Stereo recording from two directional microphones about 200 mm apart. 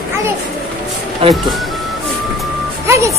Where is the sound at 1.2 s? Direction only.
25° right (ahead or behind).